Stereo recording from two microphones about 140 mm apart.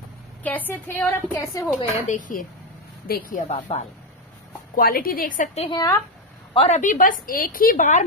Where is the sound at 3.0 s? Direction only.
80° left; by 3.8 s 65° left (ahead or behind).